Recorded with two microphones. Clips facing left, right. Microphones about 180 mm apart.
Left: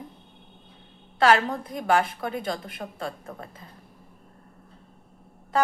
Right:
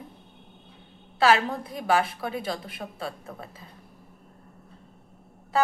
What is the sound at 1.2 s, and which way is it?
A woman's voice, 5° right (ahead or behind).